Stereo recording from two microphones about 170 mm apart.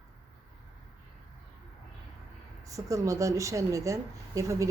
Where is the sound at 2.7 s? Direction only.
20° right (ahead or behind).